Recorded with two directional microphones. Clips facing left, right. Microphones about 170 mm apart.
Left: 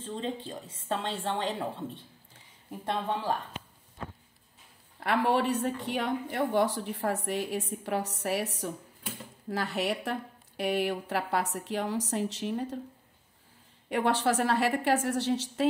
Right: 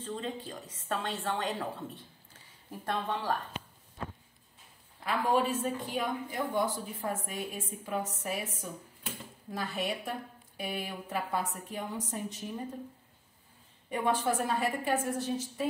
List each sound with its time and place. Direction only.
0.0 s a woman's voice: 25° left (ahead or behind)
2.7 s a woman's voice: 20° left (ahead or behind)
5.0 s speech: 70° left (ahead or behind)
13.8 s speech: 85° left